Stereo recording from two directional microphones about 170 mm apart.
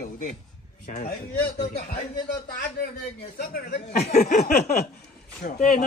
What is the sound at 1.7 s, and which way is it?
Speech, 65° left (ahead or behind).